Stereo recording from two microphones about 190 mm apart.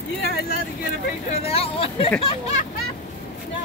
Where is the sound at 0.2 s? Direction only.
55° left (ahead or behind).